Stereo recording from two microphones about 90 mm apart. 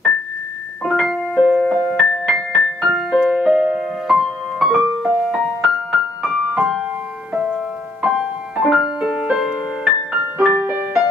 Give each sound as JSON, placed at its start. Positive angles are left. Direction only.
{"t": 1.0, "sound": "keyboard", "side_deg": -5}
{"t": 1.6, "sound": "music", "side_deg": 5}
{"t": 3.3, "sound": "music", "side_deg": -10}
{"t": 4.1, "sound": "music", "side_deg": 0}
{"t": 10.6, "sound": "music", "side_deg": -20}